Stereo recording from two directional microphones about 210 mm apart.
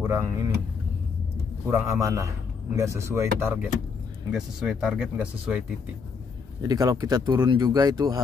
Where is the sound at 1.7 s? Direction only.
10° right (ahead or behind).